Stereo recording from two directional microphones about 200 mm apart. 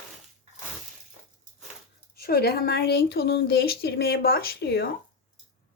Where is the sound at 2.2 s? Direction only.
50° left (ahead or behind).